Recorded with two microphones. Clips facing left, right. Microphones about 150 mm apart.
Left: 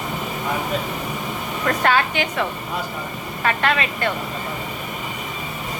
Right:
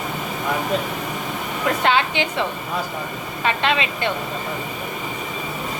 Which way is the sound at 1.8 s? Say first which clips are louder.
Even; 25° right (ahead or behind).